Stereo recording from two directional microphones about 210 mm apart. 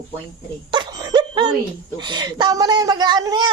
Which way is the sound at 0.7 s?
20° right (ahead or behind).